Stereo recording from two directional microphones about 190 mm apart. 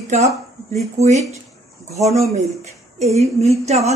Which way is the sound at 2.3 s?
35° right (ahead or behind).